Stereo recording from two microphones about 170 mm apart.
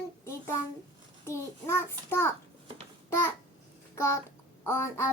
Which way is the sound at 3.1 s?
15° left (ahead or behind).